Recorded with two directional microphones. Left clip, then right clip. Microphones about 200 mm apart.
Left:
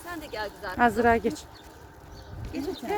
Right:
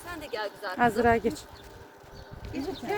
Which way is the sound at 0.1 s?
10° right (ahead or behind).